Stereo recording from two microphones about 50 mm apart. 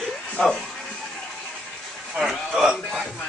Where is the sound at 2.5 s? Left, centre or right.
Centre.